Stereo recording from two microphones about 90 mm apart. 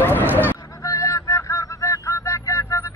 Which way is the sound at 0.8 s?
35° left (ahead or behind).